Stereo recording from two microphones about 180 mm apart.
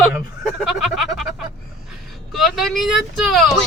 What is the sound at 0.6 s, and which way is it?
Speech, centre (ahead or behind).